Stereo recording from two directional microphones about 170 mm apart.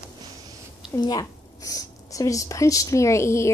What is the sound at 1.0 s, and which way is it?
A woman's voice, 25° left (ahead or behind).